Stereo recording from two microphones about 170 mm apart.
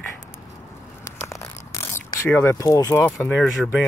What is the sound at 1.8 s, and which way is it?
Speech, 15° left (ahead or behind).